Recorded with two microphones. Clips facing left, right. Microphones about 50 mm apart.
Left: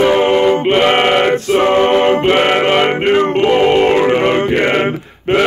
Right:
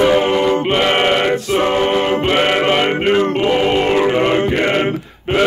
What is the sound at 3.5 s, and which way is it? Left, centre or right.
Music, left.